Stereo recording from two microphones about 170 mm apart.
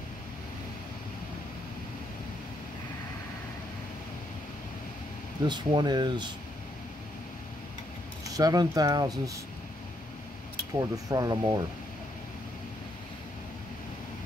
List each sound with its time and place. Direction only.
5.5 s speech: 25° right (ahead or behind)
8.3 s speech: 20° right (ahead or behind)
10.8 s speech: 20° right (ahead or behind)